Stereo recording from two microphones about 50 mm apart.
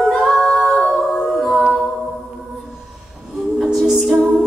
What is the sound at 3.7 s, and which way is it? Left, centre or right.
Music, centre.